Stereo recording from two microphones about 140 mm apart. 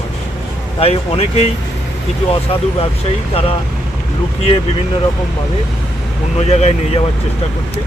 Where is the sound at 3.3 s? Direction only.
45° left (ahead or behind).